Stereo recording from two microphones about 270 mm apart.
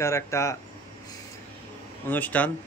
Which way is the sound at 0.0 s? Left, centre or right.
Centre.